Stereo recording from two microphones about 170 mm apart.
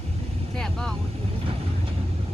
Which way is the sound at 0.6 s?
5° left (ahead or behind).